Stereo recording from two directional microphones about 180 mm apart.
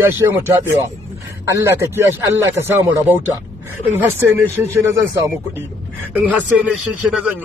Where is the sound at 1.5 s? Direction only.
15° right (ahead or behind).